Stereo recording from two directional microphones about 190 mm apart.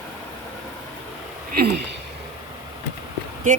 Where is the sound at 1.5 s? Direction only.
55° right (ahead or behind).